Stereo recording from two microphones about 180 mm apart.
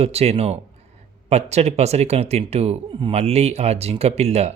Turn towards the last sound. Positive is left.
turn(degrees=-35)  # may be behind; listen again after turning